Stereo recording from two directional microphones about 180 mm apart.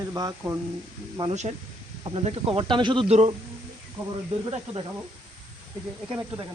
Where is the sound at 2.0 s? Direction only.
30° right (ahead or behind).